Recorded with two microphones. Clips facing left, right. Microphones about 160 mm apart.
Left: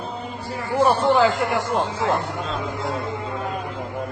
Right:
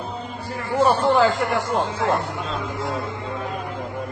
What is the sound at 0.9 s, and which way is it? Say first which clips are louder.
Speech: even; centre (ahead or behind).